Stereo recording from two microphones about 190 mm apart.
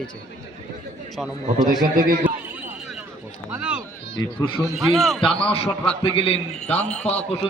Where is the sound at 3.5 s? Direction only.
5° right (ahead or behind).